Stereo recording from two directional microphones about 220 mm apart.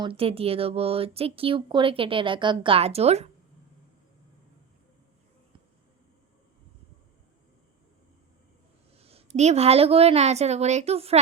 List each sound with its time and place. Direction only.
0.0 s speech: 25° right (ahead or behind)
9.0 s speech: 25° right (ahead or behind)